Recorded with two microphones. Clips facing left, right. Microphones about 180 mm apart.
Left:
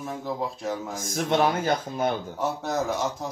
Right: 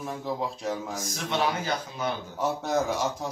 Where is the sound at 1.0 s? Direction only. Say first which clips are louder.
Left 8 dB; 50° left (ahead or behind).